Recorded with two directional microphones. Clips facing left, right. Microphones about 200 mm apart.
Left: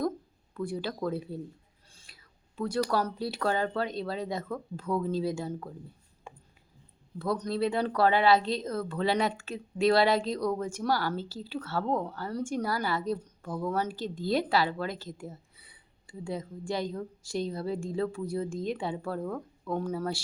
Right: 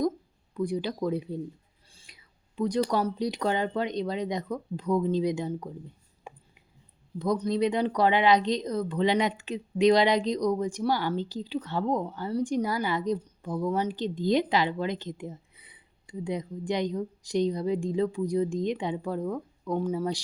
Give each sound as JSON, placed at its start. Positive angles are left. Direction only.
{"t": 0.5, "sound": "a woman's voice", "side_deg": -15}
{"t": 1.9, "sound": "whispering", "side_deg": -15}
{"t": 3.0, "sound": "a woman's voice", "side_deg": -15}
{"t": 7.2, "sound": "a woman's voice", "side_deg": -15}